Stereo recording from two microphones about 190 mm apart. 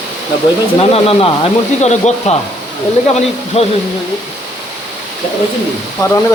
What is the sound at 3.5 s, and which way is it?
Speech, 35° left (ahead or behind).